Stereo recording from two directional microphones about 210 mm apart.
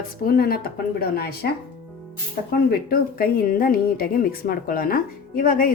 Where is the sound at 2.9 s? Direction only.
45° left (ahead or behind).